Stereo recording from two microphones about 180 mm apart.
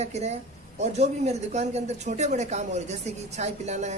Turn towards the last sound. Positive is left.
turn(degrees=-40)  # may be behind; listen again after turning